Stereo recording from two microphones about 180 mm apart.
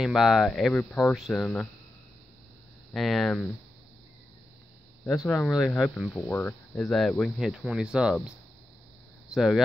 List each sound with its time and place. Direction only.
0.0 s speech: centre (ahead or behind)
2.9 s speech: centre (ahead or behind)
5.3 s speech: 5° left (ahead or behind)